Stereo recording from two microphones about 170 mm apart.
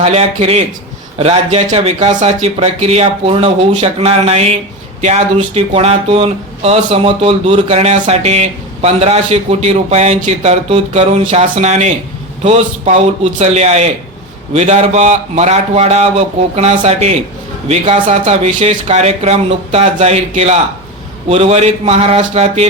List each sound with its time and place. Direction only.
0.0 s speech: 40° right (ahead or behind)